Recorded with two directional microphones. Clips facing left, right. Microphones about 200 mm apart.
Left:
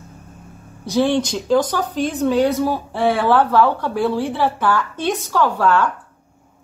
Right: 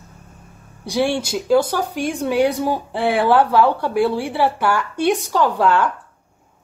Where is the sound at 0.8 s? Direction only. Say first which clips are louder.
Left 3 dB; 10° right (ahead or behind).